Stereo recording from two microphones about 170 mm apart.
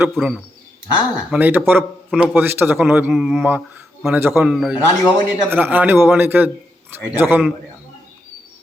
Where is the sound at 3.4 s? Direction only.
15° right (ahead or behind).